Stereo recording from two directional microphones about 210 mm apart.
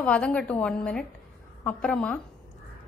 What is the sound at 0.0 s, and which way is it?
A woman's voice, 5° left (ahead or behind).